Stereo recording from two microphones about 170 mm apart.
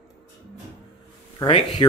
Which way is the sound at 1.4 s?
30° left (ahead or behind).